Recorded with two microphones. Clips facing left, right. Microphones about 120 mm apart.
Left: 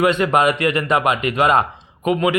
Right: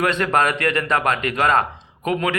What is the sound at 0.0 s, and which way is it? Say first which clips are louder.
A man's voice: left 3 dB; 10° left (ahead or behind).